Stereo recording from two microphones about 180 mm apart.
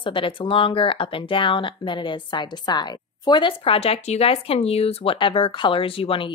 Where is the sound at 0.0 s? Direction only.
30° left (ahead or behind).